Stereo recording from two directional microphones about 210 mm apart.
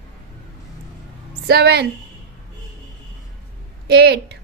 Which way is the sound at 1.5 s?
50° right (ahead or behind).